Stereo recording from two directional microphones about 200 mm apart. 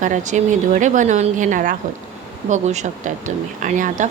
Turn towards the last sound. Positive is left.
turn(degrees=-40)  # may be behind; listen again after turning